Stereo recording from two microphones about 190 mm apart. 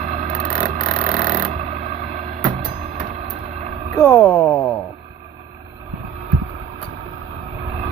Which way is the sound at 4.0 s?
10° left (ahead or behind).